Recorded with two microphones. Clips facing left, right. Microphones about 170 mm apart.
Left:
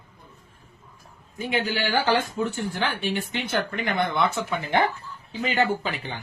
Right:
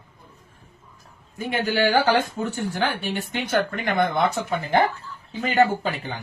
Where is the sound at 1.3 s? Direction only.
45° right (ahead or behind).